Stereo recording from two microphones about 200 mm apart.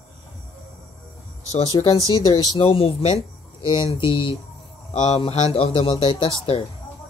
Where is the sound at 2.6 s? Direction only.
30° left (ahead or behind).